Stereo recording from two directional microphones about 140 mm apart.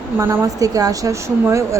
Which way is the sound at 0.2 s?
15° right (ahead or behind).